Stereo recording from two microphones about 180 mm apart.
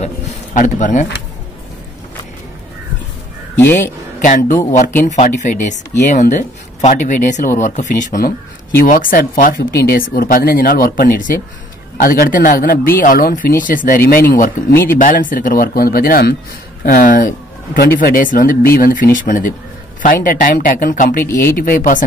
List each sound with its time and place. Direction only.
0.6 s speech: 45° left (ahead or behind)
3.5 s speech: 15° left (ahead or behind)
4.2 s speech: 45° left (ahead or behind)
21.2 s speech: 15° left (ahead or behind)
21.5 s speech: 50° left (ahead or behind)